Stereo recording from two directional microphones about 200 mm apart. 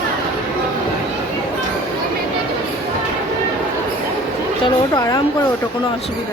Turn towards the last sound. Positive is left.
turn(degrees=20)  # may be behind; listen again after turning